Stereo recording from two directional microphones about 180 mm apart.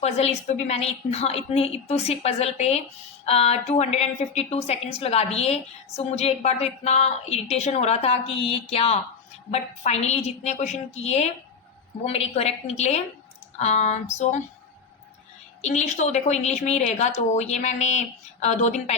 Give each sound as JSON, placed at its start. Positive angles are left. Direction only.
{"t": 0.0, "sound": "a woman's voice", "side_deg": 35}
{"t": 15.6, "sound": "a woman's voice", "side_deg": 40}